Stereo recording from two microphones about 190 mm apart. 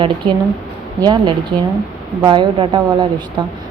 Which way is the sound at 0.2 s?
25° right (ahead or behind).